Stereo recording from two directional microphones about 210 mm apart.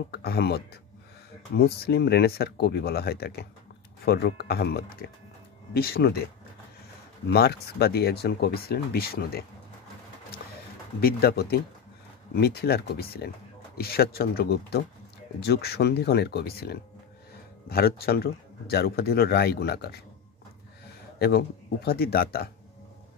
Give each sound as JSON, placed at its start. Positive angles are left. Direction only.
{"t": 0.1, "sound": "speech", "side_deg": 50}
{"t": 7.2, "sound": "speech", "side_deg": 50}
{"t": 11.0, "sound": "speech", "side_deg": 45}
{"t": 21.2, "sound": "speech", "side_deg": 50}